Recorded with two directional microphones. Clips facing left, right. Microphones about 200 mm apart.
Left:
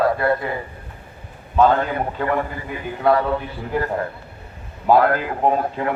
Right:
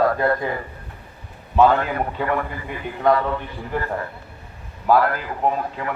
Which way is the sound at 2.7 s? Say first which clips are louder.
Even; 5° left (ahead or behind).